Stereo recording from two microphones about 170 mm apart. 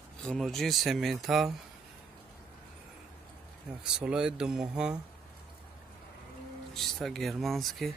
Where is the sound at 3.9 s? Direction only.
5° right (ahead or behind).